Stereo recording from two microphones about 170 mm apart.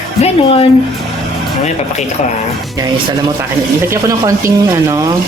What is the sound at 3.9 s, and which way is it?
Speech, 15° right (ahead or behind).